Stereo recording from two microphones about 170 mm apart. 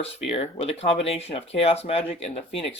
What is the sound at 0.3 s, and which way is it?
Speech, 35° left (ahead or behind).